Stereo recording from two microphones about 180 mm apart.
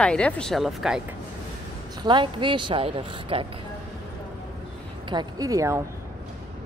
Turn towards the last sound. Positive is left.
turn(degrees=-20)  # may be behind; listen again after turning